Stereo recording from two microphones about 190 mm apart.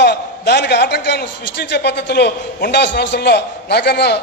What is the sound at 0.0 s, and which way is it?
A man's voice, 60° left (ahead or behind).